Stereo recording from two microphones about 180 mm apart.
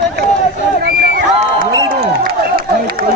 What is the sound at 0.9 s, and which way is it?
Run, 55° right (ahead or behind).